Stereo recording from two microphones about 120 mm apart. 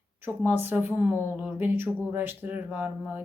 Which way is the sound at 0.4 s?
15° right (ahead or behind).